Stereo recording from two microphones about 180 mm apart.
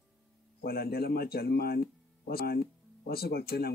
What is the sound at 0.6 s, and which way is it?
Speech, 60° left (ahead or behind).